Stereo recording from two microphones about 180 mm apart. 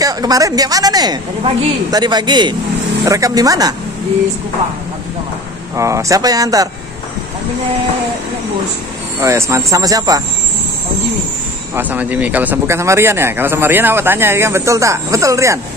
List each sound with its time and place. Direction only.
0.0 s a woman's voice: 20° right (ahead or behind)
5.8 s a woman's voice: 15° right (ahead or behind)
9.2 s a woman's voice: 15° right (ahead or behind)
11.7 s speech: 10° right (ahead or behind)